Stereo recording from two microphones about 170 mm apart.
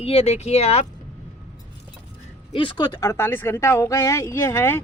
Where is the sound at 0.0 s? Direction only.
35° left (ahead or behind).